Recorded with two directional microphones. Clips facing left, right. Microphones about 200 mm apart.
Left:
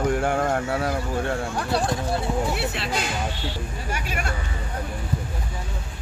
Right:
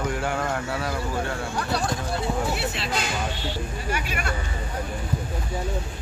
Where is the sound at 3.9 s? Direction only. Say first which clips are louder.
Even; 45° left (ahead or behind).